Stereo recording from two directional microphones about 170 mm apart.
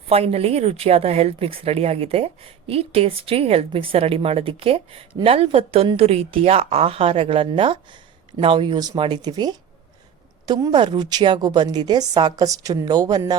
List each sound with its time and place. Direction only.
0.1 s a woman's voice: 35° right (ahead or behind)